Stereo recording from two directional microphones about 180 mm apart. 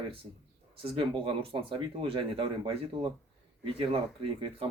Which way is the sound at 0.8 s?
30° right (ahead or behind).